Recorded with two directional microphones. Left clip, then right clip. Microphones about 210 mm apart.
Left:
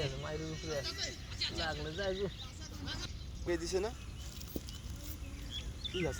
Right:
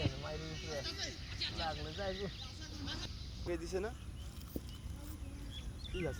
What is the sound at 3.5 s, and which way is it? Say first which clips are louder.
Speech: left 4 dB; 30° left (ahead or behind).